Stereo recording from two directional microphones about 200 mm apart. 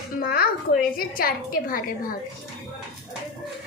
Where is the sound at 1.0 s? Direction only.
45° left (ahead or behind).